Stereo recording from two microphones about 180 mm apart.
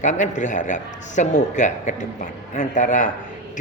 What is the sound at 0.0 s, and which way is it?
A man's voice, 40° left (ahead or behind).